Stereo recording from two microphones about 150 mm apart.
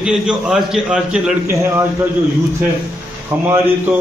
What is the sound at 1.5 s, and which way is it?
Speech, 15° right (ahead or behind).